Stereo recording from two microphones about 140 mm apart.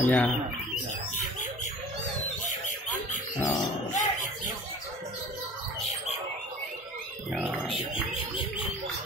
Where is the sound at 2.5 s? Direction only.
65° left (ahead or behind).